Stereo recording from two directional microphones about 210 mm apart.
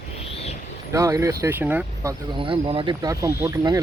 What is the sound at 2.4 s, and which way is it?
Speech, 25° right (ahead or behind).